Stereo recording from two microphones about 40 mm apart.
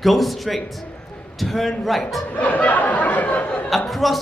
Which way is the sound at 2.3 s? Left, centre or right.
Left.